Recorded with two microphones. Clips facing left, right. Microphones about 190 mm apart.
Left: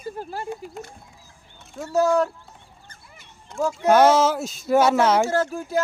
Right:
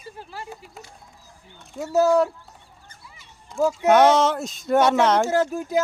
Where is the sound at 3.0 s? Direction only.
55° left (ahead or behind).